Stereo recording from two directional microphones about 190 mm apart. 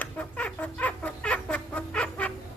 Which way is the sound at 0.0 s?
10° left (ahead or behind).